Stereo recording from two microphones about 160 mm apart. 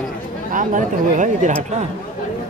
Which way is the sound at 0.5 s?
55° right (ahead or behind).